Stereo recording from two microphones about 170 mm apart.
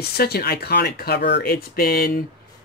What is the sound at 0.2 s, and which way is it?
Speech, 70° left (ahead or behind).